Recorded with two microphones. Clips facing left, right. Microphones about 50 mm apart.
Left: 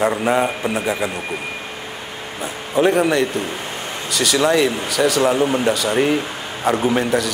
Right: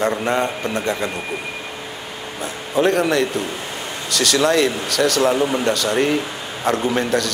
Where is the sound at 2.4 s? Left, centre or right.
Centre.